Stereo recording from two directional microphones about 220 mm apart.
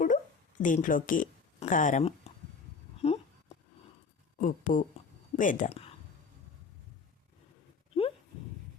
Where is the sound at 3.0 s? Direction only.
30° left (ahead or behind).